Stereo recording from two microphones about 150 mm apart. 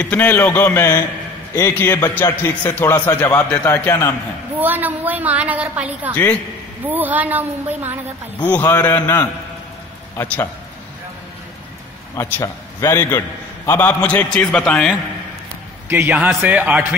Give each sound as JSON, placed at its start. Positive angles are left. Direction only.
{"t": 0.0, "sound": "a man's voice", "side_deg": 10}
{"t": 4.6, "sound": "a woman's voice", "side_deg": -10}
{"t": 8.4, "sound": "a man's voice", "side_deg": 10}
{"t": 12.2, "sound": "a man's voice", "side_deg": 20}
{"t": 15.9, "sound": "a woman's voice", "side_deg": -10}